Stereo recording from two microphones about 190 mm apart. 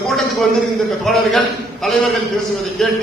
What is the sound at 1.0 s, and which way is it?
Speech, centre (ahead or behind).